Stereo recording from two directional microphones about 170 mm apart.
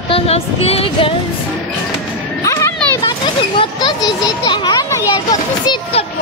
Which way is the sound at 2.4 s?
20° left (ahead or behind).